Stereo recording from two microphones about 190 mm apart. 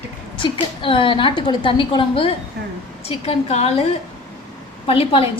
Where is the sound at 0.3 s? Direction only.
25° left (ahead or behind).